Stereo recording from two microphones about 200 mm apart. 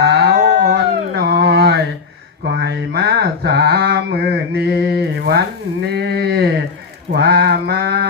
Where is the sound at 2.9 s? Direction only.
55° right (ahead or behind).